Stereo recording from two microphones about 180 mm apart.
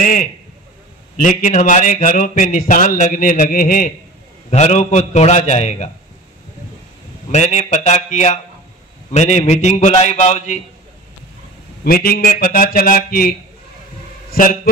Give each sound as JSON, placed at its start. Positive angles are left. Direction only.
{"t": 0.0, "sound": "a man's voice", "side_deg": 50}
{"t": 4.5, "sound": "a man's voice", "side_deg": 40}
{"t": 7.2, "sound": "a man's voice", "side_deg": 40}
{"t": 11.8, "sound": "a man's voice", "side_deg": 55}
{"t": 14.3, "sound": "a man's voice", "side_deg": 50}